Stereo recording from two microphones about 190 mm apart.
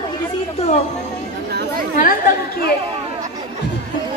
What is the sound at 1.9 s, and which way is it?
Speech, 45° left (ahead or behind).